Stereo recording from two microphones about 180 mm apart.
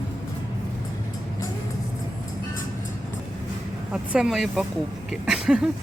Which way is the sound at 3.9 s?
5° right (ahead or behind).